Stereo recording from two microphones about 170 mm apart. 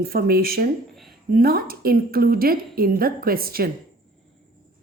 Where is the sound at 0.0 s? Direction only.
60° right (ahead or behind).